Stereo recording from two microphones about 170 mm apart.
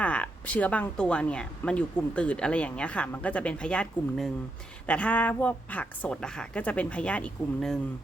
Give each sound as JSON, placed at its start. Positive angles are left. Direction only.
{"t": 0.0, "sound": "speech", "side_deg": 10}